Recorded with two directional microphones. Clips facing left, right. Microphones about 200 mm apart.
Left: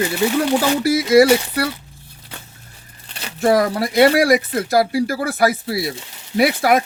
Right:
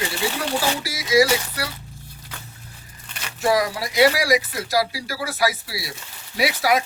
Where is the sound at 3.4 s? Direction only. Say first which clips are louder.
Left 5 dB; 55° left (ahead or behind).